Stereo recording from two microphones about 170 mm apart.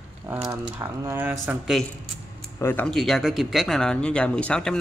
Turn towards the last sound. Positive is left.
turn(degrees=5)  # may be behind; listen again after turning